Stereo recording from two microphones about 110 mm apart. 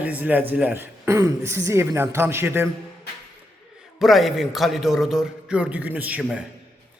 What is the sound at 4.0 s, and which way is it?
A man's voice, centre (ahead or behind).